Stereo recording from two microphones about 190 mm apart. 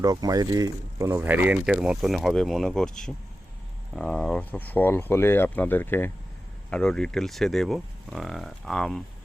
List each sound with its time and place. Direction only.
0.0 s speech: 20° right (ahead or behind); by 9.0 s 5° left (ahead or behind)